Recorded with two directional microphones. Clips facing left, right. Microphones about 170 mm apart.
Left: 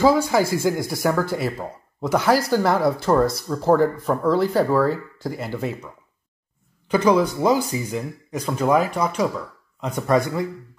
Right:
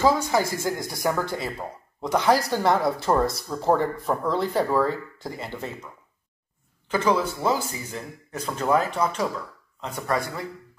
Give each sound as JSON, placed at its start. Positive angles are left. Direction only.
{"t": 0.0, "sound": "speech", "side_deg": 10}
{"t": 6.9, "sound": "speech", "side_deg": 15}